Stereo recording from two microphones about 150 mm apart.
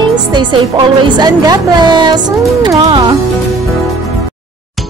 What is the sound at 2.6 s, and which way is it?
Music, 30° right (ahead or behind).